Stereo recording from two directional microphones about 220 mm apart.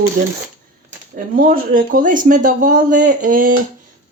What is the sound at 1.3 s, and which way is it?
Speech, 40° right (ahead or behind).